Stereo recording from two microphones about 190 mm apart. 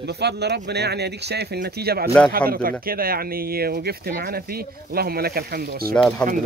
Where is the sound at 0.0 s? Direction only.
60° right (ahead or behind).